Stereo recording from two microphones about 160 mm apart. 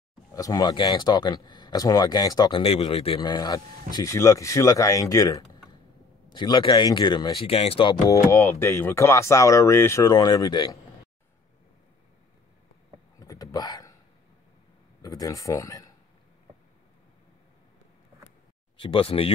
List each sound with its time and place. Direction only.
0.3 s speech: 20° left (ahead or behind)
2.6 s speech: 40° left (ahead or behind)
13.2 s a sound: 20° left (ahead or behind)
15.0 s speech: 25° left (ahead or behind)
18.8 s speech: 35° left (ahead or behind)